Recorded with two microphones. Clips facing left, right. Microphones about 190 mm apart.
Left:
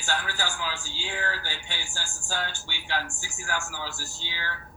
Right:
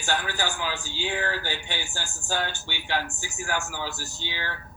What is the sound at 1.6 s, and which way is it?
A man's voice, 20° right (ahead or behind).